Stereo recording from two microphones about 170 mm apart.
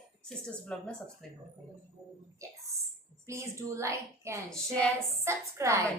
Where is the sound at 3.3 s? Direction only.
15° right (ahead or behind).